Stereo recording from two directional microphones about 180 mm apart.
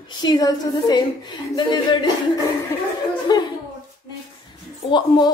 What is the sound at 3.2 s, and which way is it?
Speech, 20° left (ahead or behind).